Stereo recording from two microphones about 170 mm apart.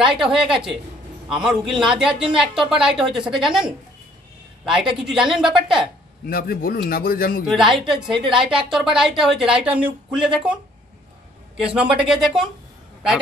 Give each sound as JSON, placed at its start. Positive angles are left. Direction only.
{"t": 0.0, "sound": "a woman's voice", "side_deg": -5}
{"t": 5.0, "sound": "a woman's voice", "side_deg": -5}
{"t": 6.2, "sound": "a man's voice", "side_deg": 60}
{"t": 7.4, "sound": "a woman's voice", "side_deg": 0}
{"t": 11.6, "sound": "a woman's voice", "side_deg": -5}